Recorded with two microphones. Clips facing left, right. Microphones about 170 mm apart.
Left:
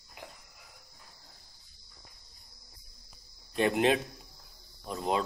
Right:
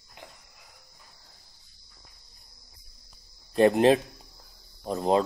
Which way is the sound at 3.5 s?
35° right (ahead or behind).